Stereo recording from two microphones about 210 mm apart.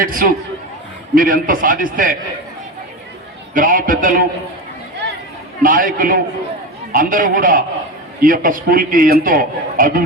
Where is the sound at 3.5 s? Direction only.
40° right (ahead or behind).